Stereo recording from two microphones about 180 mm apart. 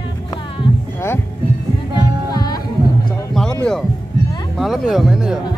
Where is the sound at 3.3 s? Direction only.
5° left (ahead or behind).